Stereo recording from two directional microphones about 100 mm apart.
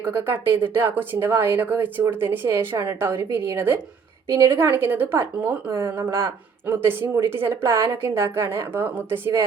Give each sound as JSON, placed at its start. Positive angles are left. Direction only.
{"t": 0.0, "sound": "a woman's voice", "side_deg": -20}